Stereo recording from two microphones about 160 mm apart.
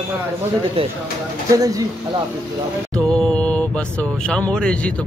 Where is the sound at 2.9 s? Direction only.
5° left (ahead or behind).